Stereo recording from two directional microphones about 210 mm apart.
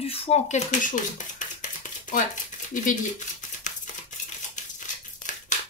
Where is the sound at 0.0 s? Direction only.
30° left (ahead or behind).